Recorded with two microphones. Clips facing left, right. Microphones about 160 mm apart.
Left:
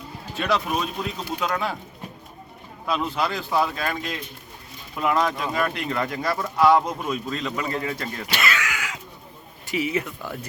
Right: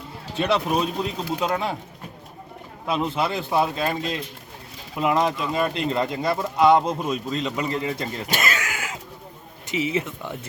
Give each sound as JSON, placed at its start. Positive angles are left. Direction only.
{"t": 0.3, "sound": "speech", "side_deg": -30}
{"t": 2.8, "sound": "speech", "side_deg": -20}
{"t": 8.3, "sound": "a sound", "side_deg": -45}
{"t": 9.6, "sound": "speech", "side_deg": -25}